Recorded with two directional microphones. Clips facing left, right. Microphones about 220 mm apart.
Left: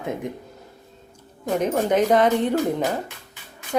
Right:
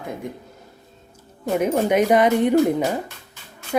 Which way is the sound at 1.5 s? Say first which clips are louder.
Right 2 dB; 5° right (ahead or behind).